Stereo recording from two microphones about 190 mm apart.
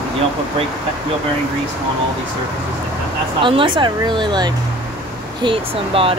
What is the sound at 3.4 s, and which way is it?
Speech, 25° right (ahead or behind).